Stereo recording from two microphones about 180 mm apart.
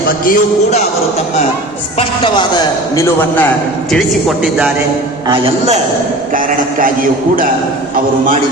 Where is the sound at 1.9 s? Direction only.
25° left (ahead or behind).